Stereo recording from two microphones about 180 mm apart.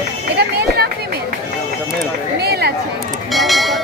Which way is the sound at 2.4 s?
60° right (ahead or behind).